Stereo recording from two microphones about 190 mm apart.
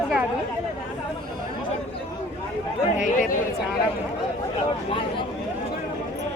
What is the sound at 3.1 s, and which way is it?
Speech, 45° left (ahead or behind).